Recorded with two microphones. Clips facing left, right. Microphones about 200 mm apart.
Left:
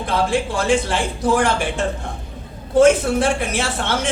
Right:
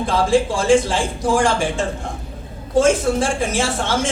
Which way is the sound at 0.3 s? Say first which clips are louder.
Right 6 dB; 60° left (ahead or behind).